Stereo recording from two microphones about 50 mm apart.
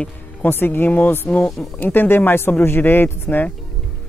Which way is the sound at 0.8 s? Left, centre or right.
Left.